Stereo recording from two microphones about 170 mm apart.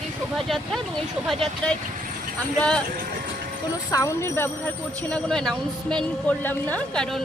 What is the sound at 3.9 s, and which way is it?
A woman's voice, 15° left (ahead or behind).